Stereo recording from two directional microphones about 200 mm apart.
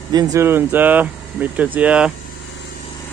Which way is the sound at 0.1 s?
20° right (ahead or behind).